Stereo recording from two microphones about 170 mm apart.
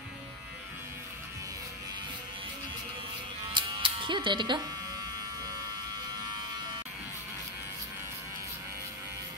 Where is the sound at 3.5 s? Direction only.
30° right (ahead or behind).